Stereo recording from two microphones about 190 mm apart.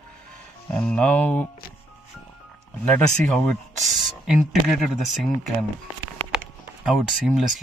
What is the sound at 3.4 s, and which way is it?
Speech, centre (ahead or behind).